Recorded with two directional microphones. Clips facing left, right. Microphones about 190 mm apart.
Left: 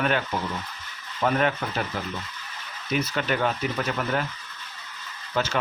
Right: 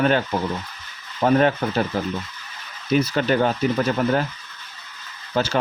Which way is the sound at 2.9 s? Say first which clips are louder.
Right 7 dB; 35° right (ahead or behind).